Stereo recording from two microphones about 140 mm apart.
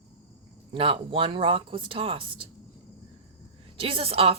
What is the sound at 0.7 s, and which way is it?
A woman's voice, 40° right (ahead or behind).